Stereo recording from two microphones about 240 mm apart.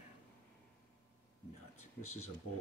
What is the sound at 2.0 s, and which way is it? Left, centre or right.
Speech, left.